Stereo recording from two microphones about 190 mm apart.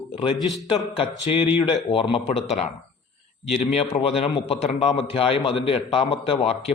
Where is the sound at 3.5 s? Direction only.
30° left (ahead or behind).